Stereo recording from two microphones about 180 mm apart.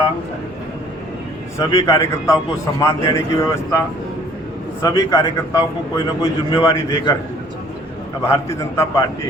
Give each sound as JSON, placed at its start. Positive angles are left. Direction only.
{"t": 1.5, "sound": "a man's voice", "side_deg": 15}
{"t": 8.2, "sound": "speech", "side_deg": 15}